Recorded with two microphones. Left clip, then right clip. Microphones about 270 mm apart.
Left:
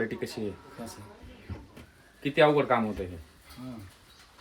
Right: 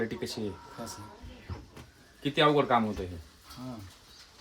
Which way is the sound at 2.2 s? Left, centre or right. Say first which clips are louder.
Left 2 dB; centre.